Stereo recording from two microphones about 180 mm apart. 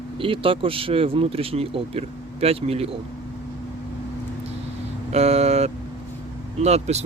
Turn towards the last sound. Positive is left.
turn(degrees=-35)  # may be behind; listen again after turning